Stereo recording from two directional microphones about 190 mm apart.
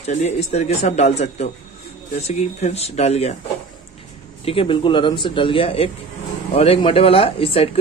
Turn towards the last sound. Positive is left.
turn(degrees=30)  # may be behind; listen again after turning